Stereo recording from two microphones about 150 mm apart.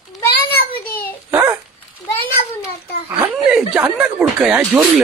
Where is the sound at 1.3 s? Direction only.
15° right (ahead or behind).